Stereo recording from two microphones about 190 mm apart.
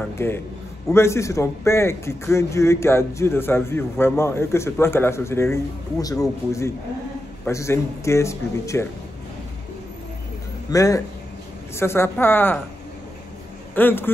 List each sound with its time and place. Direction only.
0.2 s a man's voice: 10° left (ahead or behind)
10.7 s a man's voice: 15° left (ahead or behind)
13.7 s a man's voice: 10° left (ahead or behind)